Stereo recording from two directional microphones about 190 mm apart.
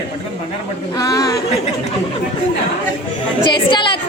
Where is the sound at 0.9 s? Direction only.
20° left (ahead or behind).